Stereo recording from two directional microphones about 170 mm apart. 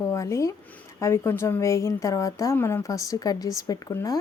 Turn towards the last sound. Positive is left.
turn(degrees=20)  # may be behind; listen again after turning